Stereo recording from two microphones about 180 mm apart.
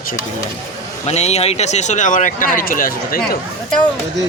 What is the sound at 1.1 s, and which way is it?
Speech, 35° left (ahead or behind).